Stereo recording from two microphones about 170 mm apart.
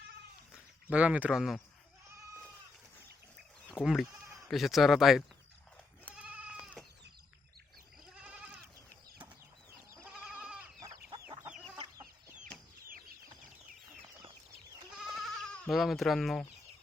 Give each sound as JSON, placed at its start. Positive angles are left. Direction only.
{"t": 0.5, "sound": "speech", "side_deg": -5}
{"t": 3.7, "sound": "speech", "side_deg": 0}
{"t": 6.1, "sound": "goat", "side_deg": -5}
{"t": 8.1, "sound": "goat", "side_deg": -5}
{"t": 10.0, "sound": "goat", "side_deg": -5}
{"t": 10.8, "sound": "chicken", "side_deg": -25}
{"t": 14.9, "sound": "goat", "side_deg": 0}